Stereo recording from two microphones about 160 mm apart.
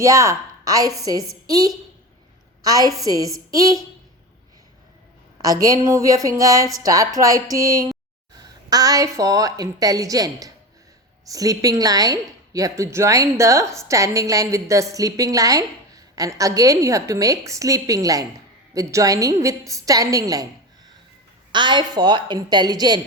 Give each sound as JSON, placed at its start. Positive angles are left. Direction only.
{"t": 0.0, "sound": "a woman's voice", "side_deg": -20}
{"t": 5.4, "sound": "a woman's voice", "side_deg": -20}
{"t": 21.5, "sound": "a woman's voice", "side_deg": -30}